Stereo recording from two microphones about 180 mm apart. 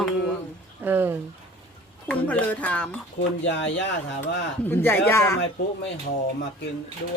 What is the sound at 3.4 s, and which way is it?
Speech, 80° left.